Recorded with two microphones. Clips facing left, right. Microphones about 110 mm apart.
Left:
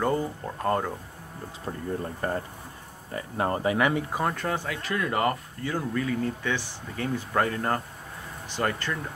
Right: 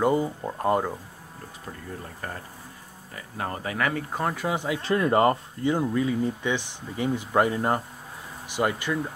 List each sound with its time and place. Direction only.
0.0 s speech: 15° right (ahead or behind)
2.2 s speech: 30° left (ahead or behind)
4.1 s speech: centre (ahead or behind)
4.6 s speech: 20° right (ahead or behind)
4.8 s speech: 30° right (ahead or behind); by 9.0 s 10° right (ahead or behind)